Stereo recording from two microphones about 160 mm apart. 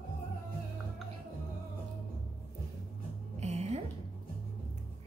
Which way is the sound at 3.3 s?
45° right (ahead or behind).